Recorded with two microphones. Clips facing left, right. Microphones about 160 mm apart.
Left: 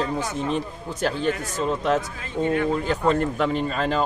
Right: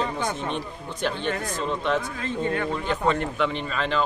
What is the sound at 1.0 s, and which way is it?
Speech, 40° left (ahead or behind).